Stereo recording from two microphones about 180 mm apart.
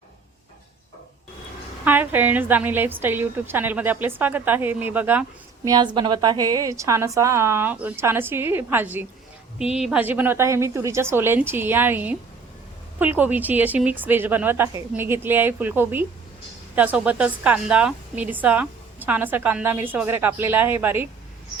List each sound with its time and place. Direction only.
1.8 s a woman's voice: 10° right (ahead or behind)
5.6 s a woman's voice: 25° right (ahead or behind)